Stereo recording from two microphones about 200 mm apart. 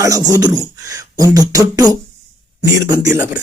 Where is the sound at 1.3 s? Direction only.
15° right (ahead or behind).